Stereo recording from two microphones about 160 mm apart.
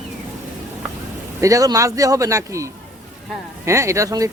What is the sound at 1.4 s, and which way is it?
Speech, 20° right (ahead or behind).